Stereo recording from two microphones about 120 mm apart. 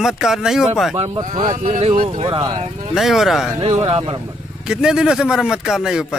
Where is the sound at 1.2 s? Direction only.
90° right.